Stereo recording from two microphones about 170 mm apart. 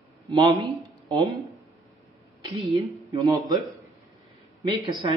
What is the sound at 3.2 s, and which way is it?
Speech, 20° right (ahead or behind).